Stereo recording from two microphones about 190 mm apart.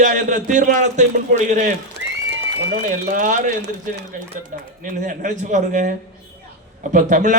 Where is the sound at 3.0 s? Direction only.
40° right (ahead or behind).